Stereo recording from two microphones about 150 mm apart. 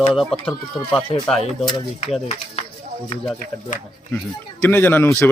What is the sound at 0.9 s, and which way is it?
Speech, 35° left (ahead or behind).